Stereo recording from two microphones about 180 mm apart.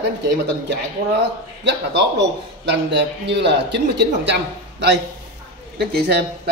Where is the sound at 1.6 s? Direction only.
75° right (ahead or behind).